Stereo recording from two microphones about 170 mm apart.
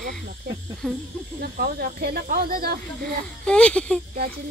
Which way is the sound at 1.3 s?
60° right (ahead or behind).